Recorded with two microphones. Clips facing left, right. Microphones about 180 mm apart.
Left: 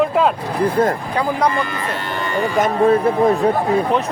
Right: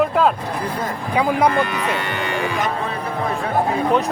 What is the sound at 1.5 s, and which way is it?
Speech, 70° right (ahead or behind).